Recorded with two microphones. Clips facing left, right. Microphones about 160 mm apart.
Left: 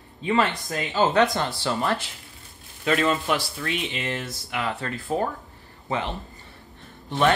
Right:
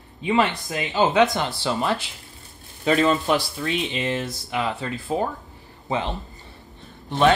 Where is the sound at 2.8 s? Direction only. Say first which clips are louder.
Right 3 dB; 30° right (ahead or behind).